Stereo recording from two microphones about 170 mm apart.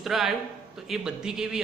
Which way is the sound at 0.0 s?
Centre (ahead or behind).